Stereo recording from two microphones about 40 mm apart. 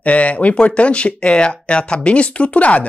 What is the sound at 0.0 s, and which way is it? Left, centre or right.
Speech, left.